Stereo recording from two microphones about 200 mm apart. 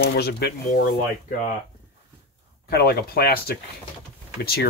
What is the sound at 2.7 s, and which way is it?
Speech, 50° left (ahead or behind).